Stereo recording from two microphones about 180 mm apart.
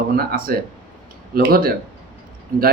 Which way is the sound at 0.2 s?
55° right (ahead or behind).